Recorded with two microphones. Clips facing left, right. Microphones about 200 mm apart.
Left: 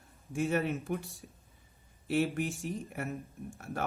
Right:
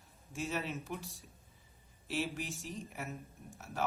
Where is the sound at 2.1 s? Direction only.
55° left (ahead or behind).